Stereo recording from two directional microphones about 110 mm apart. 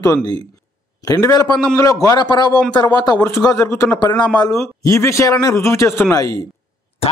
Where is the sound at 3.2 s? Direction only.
30° left (ahead or behind).